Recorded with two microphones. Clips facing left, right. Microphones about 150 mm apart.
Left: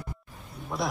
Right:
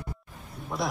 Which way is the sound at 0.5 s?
Centre (ahead or behind).